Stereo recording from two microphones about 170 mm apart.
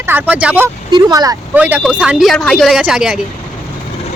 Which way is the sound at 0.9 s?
25° right (ahead or behind).